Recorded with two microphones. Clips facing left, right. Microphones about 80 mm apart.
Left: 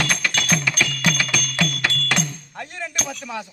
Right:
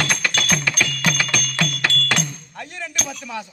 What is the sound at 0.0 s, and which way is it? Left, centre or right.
Music, centre.